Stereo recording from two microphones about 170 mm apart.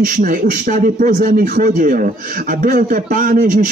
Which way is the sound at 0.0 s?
55° right (ahead or behind).